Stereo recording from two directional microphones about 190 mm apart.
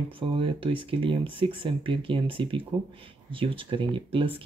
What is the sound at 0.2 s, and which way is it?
Speech, 25° right (ahead or behind).